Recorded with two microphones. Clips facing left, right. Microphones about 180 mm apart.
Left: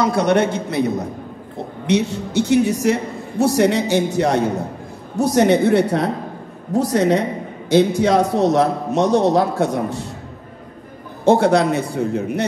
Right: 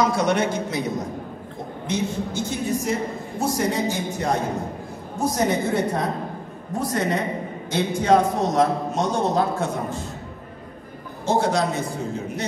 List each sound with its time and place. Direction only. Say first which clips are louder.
0.0 s a man's voice: left 4 dB; 60° left (ahead or behind)
1.9 s a man's voice: left 7 dB; 75° left (ahead or behind)
11.2 s a man's voice: left 7 dB; 60° left (ahead or behind)